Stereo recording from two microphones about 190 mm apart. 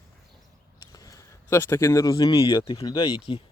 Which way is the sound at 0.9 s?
20° left (ahead or behind).